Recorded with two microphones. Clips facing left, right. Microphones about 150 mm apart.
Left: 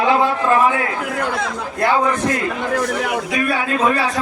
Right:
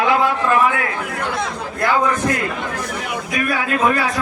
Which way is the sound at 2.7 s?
85° left.